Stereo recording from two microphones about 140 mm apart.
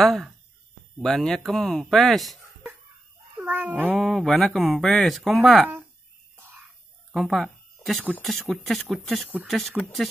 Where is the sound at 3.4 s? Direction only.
10° right (ahead or behind).